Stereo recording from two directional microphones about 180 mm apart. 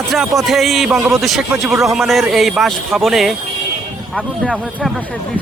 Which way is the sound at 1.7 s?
15° right (ahead or behind).